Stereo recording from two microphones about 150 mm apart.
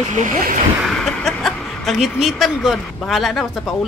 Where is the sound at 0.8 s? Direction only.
Centre (ahead or behind).